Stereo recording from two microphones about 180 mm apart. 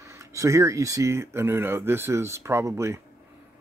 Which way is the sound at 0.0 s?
15° right (ahead or behind).